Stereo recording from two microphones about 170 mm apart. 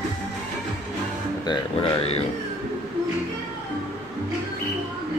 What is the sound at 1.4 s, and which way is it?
Speech, 30° left (ahead or behind).